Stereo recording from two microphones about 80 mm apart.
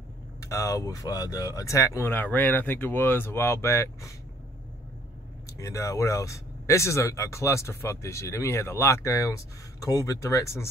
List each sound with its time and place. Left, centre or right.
0.4 s speech: left
2.0 s speech: left
5.5 s speech: left